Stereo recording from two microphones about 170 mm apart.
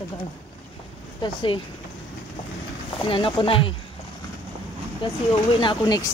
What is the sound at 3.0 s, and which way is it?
Speech, 30° left (ahead or behind).